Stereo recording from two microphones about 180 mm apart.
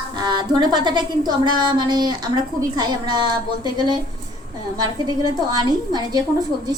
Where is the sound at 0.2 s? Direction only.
25° right (ahead or behind).